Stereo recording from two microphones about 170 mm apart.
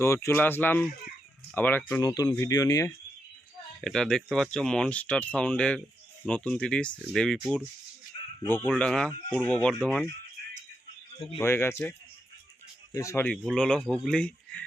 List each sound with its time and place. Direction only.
0.0 s speech: 15° left (ahead or behind)
2.0 s speech: 20° left (ahead or behind)
3.8 s speech: 5° left (ahead or behind)
8.4 s speech: 10° left (ahead or behind)
11.3 s speech: 15° left (ahead or behind)